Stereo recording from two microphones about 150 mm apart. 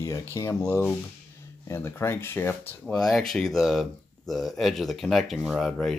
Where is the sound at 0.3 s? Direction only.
20° left (ahead or behind).